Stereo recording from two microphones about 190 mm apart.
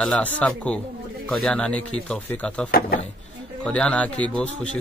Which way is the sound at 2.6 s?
50° left (ahead or behind).